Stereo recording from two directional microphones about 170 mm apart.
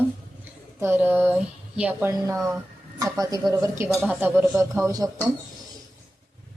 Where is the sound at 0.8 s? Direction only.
10° right (ahead or behind).